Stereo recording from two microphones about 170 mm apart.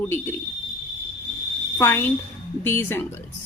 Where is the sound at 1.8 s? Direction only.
15° left (ahead or behind).